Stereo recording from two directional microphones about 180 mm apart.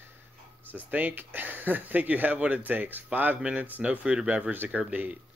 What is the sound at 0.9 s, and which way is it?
Speech, 10° right (ahead or behind).